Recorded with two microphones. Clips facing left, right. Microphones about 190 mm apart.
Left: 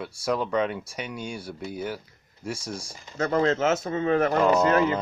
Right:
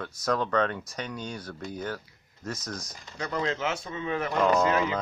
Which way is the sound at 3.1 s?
40° left (ahead or behind).